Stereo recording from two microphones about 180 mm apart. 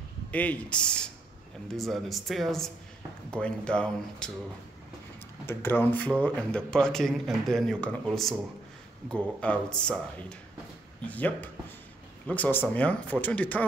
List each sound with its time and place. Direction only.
0.3 s a man's voice: 10° left (ahead or behind)
5.5 s a man's voice: 10° left (ahead or behind)